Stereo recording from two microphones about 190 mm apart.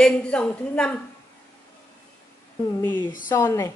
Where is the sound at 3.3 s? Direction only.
15° left (ahead or behind).